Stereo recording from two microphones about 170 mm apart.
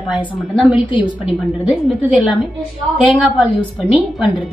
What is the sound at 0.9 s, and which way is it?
Speech, 30° left (ahead or behind).